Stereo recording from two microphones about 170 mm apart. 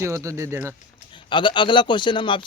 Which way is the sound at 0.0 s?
20° right (ahead or behind).